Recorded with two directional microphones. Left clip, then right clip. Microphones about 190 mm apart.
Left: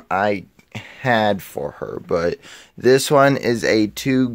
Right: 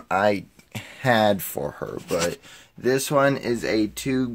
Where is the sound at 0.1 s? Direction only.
10° left (ahead or behind).